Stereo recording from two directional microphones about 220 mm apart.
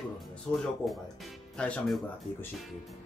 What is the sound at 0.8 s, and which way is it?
Speech, centre (ahead or behind).